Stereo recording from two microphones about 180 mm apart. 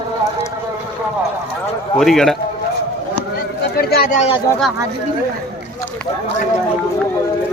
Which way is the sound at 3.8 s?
55° left (ahead or behind).